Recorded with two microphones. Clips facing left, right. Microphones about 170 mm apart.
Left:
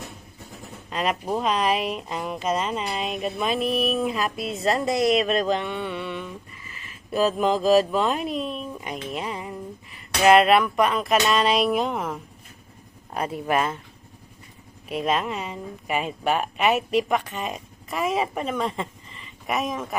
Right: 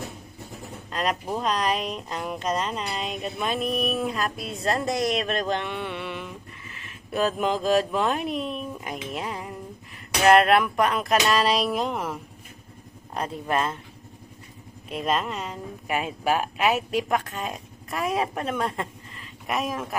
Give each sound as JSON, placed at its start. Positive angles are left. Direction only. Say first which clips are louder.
{"t": 0.9, "sound": "speech", "louder": "left 2 dB", "side_deg": 5}
{"t": 14.8, "sound": "speech", "louder": "left 2 dB", "side_deg": 0}